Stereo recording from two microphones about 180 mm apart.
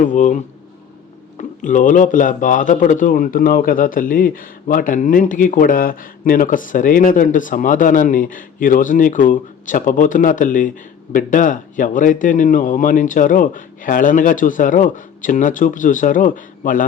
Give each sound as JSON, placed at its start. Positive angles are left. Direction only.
{"t": 0.0, "sound": "speech", "side_deg": 45}